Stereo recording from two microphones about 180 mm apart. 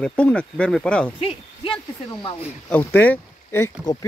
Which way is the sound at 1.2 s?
30° left (ahead or behind).